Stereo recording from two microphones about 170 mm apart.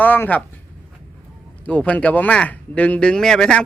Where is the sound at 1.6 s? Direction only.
10° left (ahead or behind).